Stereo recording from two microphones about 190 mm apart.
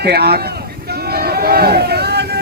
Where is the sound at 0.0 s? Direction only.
60° right (ahead or behind).